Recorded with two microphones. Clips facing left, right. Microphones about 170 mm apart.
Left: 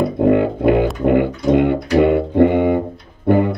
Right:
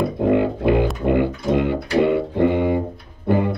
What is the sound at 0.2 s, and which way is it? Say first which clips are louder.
Music: left 4 dB; 55° left (ahead or behind).